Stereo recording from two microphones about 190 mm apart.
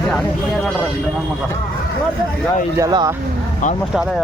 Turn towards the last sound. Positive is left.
turn(degrees=-20)  # may be behind; listen again after turning